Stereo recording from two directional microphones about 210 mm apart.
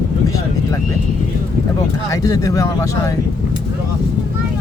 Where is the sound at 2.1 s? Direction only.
15° left (ahead or behind).